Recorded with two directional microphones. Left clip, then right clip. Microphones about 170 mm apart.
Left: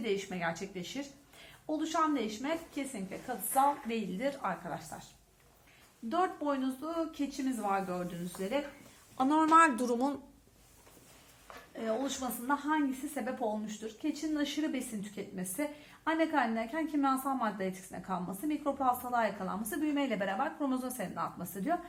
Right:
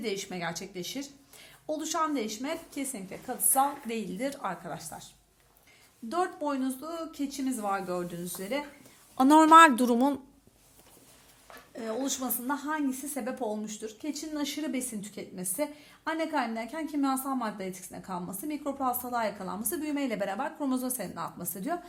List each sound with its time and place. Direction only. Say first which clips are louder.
0.0 s a woman's voice: even; 45° right (ahead or behind)
6.1 s a woman's voice: right 1 dB; 45° right (ahead or behind)
9.1 s a woman's voice: right 8 dB; 75° right (ahead or behind); by 10.2 s 50° right (ahead or behind)
11.9 s a woman's voice: right 2 dB; 55° right (ahead or behind)